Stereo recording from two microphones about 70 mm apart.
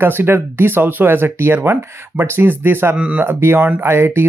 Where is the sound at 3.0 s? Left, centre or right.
Centre.